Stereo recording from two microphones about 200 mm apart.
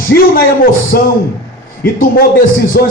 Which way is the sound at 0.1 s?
45° left (ahead or behind).